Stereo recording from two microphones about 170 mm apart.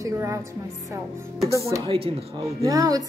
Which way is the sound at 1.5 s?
15° right (ahead or behind).